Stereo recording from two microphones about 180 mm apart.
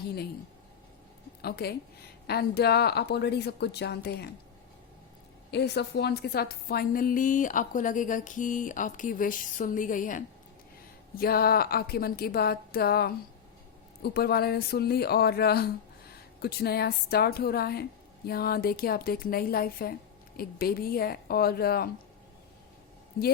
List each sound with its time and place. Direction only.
1.4 s a woman's voice: 60° left (ahead or behind)
5.5 s a woman's voice: 70° left (ahead or behind)